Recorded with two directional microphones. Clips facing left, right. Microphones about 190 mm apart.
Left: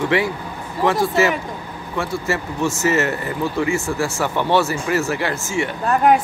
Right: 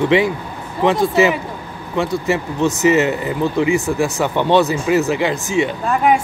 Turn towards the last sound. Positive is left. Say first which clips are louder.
# even
turn(degrees=0)  # may be behind; listen again after turning